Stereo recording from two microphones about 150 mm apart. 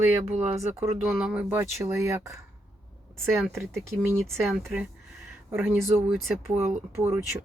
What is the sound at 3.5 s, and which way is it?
Speech, 15° right (ahead or behind).